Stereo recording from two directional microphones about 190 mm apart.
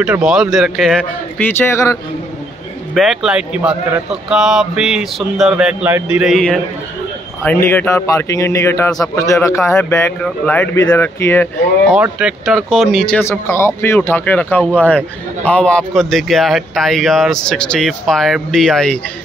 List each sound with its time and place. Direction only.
0.0 s a man's voice: 5° right (ahead or behind)
1.6 s speech: 15° left (ahead or behind)
2.9 s a man's voice: centre (ahead or behind)
11.9 s a man's voice: 5° right (ahead or behind)